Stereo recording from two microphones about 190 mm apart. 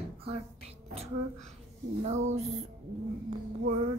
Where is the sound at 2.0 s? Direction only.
40° right (ahead or behind).